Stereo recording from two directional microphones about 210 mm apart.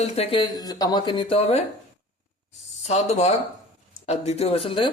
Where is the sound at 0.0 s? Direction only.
30° left (ahead or behind).